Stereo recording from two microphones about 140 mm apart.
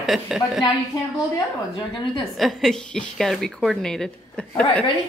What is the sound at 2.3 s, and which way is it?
A woman's voice, centre (ahead or behind).